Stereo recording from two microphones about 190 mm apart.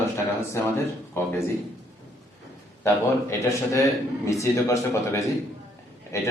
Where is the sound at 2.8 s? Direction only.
15° left (ahead or behind).